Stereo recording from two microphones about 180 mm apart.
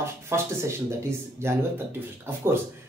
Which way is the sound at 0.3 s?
15° right (ahead or behind).